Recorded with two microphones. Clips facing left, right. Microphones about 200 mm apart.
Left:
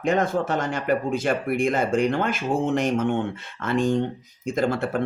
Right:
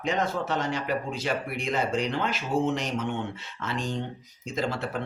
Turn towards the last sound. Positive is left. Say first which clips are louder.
# left 6 dB
turn(degrees=50)  # may be behind; listen again after turning